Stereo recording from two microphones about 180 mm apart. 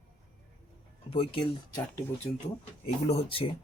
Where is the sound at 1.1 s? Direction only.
30° left (ahead or behind).